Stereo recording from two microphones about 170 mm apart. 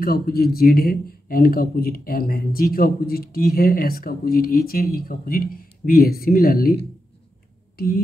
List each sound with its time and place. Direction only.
0.0 s speech: 65° left (ahead or behind)